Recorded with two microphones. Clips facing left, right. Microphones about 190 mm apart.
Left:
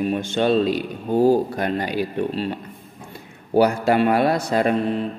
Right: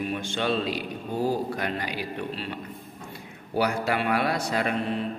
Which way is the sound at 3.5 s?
40° left (ahead or behind).